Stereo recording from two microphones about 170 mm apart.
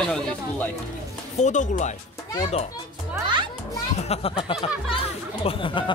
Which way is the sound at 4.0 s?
35° left (ahead or behind).